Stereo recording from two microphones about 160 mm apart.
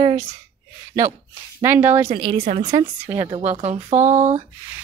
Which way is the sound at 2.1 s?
30° right (ahead or behind).